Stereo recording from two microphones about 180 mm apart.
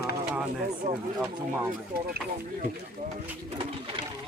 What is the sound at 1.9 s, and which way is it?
Speech, 60° right (ahead or behind).